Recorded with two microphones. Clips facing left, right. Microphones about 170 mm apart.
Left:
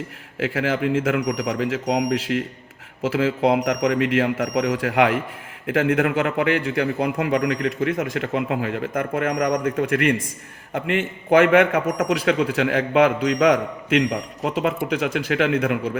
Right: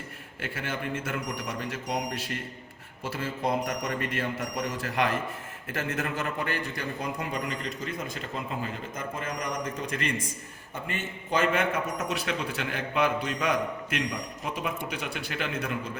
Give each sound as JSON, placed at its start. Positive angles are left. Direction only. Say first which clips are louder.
{"t": 0.3, "sound": "a man's voice", "louder": "left 12 dB", "side_deg": 90}
{"t": 10.8, "sound": "a man's voice", "louder": "left 12 dB", "side_deg": 85}